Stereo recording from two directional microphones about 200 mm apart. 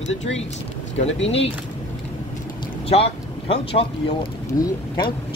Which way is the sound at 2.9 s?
30° left (ahead or behind).